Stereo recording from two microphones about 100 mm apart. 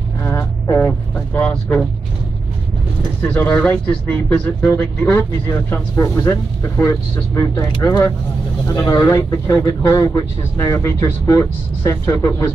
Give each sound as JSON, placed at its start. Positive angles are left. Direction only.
{"t": 0.2, "sound": "vehicle", "side_deg": 30}
{"t": 1.5, "sound": "speech", "side_deg": 10}
{"t": 3.2, "sound": "speech", "side_deg": 15}